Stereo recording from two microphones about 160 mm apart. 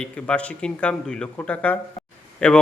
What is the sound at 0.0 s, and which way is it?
A man's voice, 5° left (ahead or behind).